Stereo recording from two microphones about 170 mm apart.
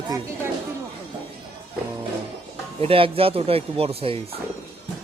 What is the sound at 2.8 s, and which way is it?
Speech, 35° right (ahead or behind).